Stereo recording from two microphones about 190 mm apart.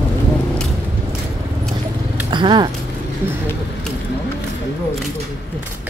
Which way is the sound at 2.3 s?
25° right (ahead or behind).